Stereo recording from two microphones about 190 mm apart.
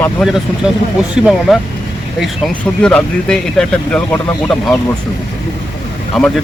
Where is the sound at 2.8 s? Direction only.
5° left (ahead or behind).